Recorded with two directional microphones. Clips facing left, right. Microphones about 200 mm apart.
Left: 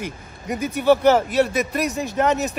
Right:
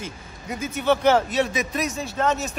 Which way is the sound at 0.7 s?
10° left (ahead or behind).